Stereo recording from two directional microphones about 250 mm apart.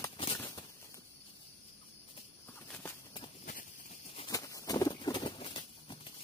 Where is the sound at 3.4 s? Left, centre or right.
Left.